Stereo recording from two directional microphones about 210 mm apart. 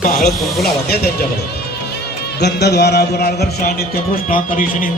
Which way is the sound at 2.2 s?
50° left (ahead or behind).